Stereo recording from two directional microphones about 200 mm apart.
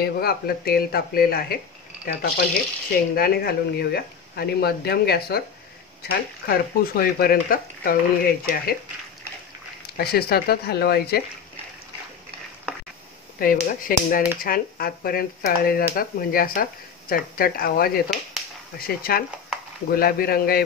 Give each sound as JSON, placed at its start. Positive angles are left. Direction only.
{"t": 0.0, "sound": "speech", "side_deg": 50}
{"t": 2.9, "sound": "speech", "side_deg": 50}
{"t": 9.8, "sound": "speech", "side_deg": 50}
{"t": 13.4, "sound": "speech", "side_deg": 45}